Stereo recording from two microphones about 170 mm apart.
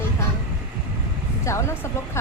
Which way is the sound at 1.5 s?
15° left (ahead or behind).